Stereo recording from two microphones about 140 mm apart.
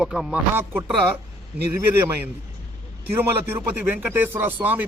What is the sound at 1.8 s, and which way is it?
A man's voice, 15° right (ahead or behind).